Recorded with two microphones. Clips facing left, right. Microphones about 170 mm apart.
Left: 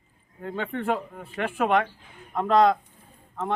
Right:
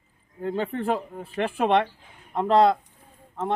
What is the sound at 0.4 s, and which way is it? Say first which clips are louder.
Speech: right 2 dB; 35° right (ahead or behind).